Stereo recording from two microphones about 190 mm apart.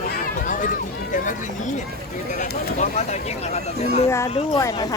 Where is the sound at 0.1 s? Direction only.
45° left (ahead or behind).